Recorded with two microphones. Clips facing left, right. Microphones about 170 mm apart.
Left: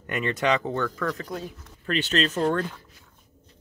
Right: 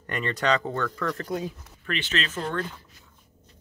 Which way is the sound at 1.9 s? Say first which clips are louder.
Left 5 dB; 40° left (ahead or behind).